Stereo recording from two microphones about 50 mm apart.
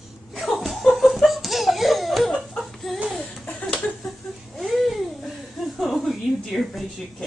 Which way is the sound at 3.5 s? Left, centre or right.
Left.